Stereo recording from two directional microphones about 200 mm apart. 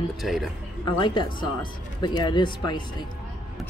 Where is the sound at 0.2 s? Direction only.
Centre (ahead or behind).